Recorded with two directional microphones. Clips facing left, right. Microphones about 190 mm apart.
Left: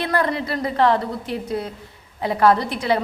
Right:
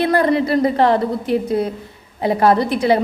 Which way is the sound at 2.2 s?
20° right (ahead or behind).